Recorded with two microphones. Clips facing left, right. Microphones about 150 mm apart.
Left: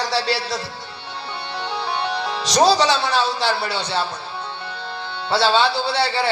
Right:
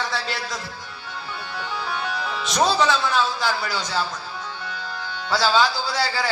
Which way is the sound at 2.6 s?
90° left.